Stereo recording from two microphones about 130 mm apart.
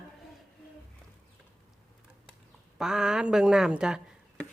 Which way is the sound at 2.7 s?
5° right (ahead or behind).